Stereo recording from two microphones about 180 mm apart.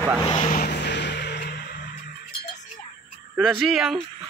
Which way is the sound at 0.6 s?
65° left (ahead or behind).